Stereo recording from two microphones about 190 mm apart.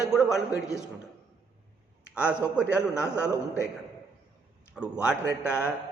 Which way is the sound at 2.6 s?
5° right (ahead or behind).